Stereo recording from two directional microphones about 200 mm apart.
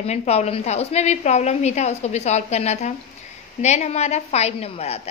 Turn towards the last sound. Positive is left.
turn(degrees=30)  # may be behind; listen again after turning